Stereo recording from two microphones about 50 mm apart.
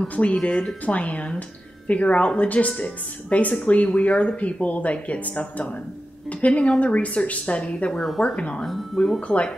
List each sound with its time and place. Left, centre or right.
0.1 s a woman's voice: left
8.0 s speech: centre
8.4 s a woman's voice: left